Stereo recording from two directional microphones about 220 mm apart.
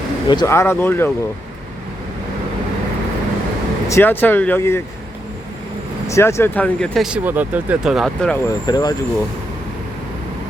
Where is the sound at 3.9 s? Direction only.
10° left (ahead or behind).